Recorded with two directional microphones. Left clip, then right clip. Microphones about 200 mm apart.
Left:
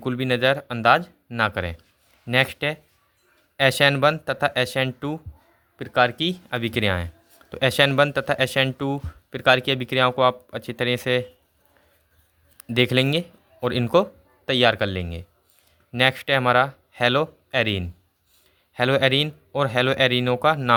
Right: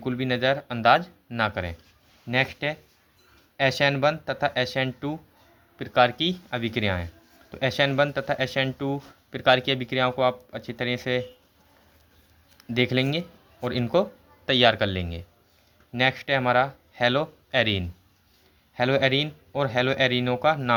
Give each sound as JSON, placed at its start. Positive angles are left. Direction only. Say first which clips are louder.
{"t": 0.0, "sound": "a man's voice", "louder": "left 4 dB", "side_deg": 30}
{"t": 12.5, "sound": "speech", "louder": "left 4 dB", "side_deg": 30}
{"t": 15.9, "sound": "a man's voice", "louder": "left 3 dB", "side_deg": 30}